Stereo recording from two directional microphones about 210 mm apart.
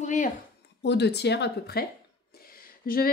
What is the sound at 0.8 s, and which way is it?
A woman's voice, 55° left (ahead or behind).